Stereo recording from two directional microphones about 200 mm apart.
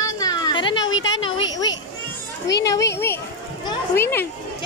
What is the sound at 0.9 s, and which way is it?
Speech, 70° left (ahead or behind).